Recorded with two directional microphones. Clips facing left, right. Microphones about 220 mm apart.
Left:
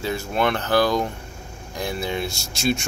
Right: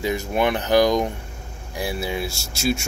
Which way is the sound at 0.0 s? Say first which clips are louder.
Right 1 dB; 15° right (ahead or behind).